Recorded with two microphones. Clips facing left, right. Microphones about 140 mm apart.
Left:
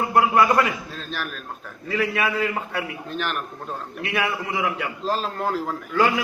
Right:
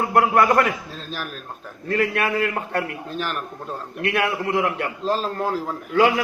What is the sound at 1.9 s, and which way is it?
A man's voice, 50° right (ahead or behind).